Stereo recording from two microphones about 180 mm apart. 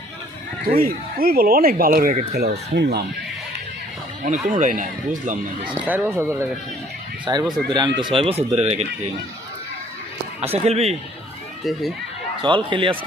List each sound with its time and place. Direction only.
0.8 s speech: 55° right (ahead or behind)
4.2 s speech: 45° right (ahead or behind)
5.8 s speech: 10° right (ahead or behind); by 8.9 s 40° right (ahead or behind)
10.4 s speech: 35° right (ahead or behind)
12.4 s speech: 25° right (ahead or behind)